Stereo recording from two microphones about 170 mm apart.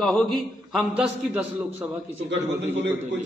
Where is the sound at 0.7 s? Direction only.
5° right (ahead or behind).